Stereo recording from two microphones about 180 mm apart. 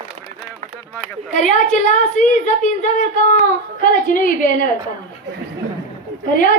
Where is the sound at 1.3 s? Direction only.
45° left (ahead or behind).